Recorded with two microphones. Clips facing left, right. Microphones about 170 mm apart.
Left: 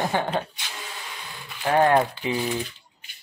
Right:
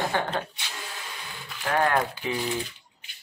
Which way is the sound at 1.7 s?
25° left (ahead or behind).